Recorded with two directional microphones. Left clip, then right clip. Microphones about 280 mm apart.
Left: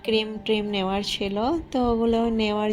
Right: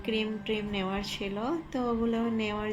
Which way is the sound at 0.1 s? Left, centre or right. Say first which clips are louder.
Left 8 dB; left.